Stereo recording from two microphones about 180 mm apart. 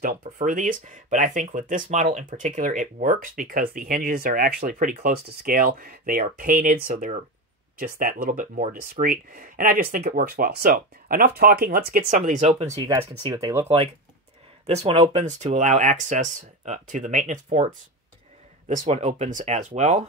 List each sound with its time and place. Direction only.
0.0 s speech: 50° right (ahead or behind)
12.7 s speech: 20° right (ahead or behind)
14.7 s speech: 35° right (ahead or behind)